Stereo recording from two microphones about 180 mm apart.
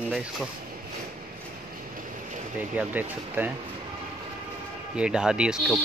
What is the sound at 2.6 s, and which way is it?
Speech, 10° right (ahead or behind).